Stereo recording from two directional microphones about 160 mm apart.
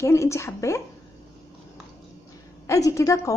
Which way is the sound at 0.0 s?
20° left (ahead or behind).